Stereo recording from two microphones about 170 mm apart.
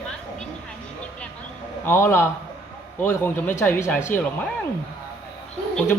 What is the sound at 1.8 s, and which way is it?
Speech, 15° left (ahead or behind).